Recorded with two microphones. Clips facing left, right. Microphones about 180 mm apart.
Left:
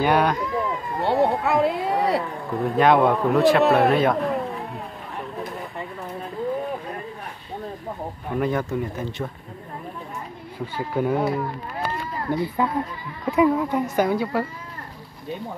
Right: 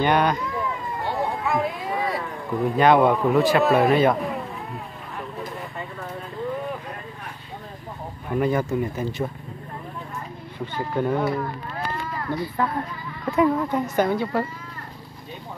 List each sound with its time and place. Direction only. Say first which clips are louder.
0.0 s a man's voice: left 1 dB; 5° left (ahead or behind)
1.0 s a sound: left 6 dB; 70° left (ahead or behind)
2.5 s a man's voice: even; centre (ahead or behind)
8.4 s a man's voice: right 2 dB; centre (ahead or behind)
10.6 s speech: even; 5° left (ahead or behind)
12.3 s speech: left 3 dB; 15° left (ahead or behind)